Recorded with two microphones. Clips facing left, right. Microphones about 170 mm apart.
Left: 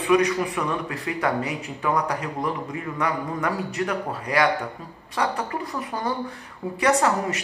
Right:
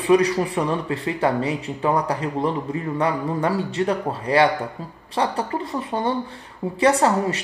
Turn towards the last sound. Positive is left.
turn(degrees=-30)  # may be behind; listen again after turning